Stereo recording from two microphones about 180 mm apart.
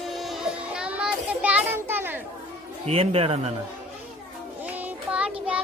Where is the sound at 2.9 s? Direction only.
35° right (ahead or behind).